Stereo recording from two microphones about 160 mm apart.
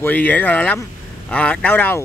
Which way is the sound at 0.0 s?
10° left (ahead or behind).